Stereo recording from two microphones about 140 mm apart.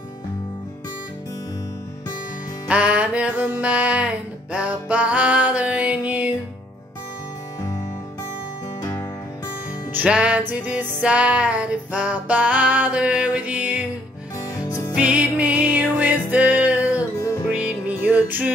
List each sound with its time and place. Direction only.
2.7 s music: 10° right (ahead or behind)
9.9 s music: 10° right (ahead or behind)
14.7 s music: 25° left (ahead or behind)
15.0 s music: 10° right (ahead or behind)
16.9 s music: 20° left (ahead or behind)
17.5 s music: 10° right (ahead or behind)